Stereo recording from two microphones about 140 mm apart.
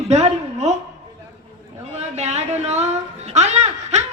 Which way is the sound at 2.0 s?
55° right (ahead or behind).